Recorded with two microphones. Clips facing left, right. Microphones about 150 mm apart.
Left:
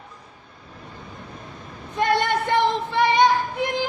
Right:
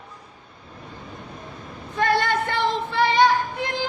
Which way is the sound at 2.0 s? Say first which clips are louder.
Even; 20° left (ahead or behind).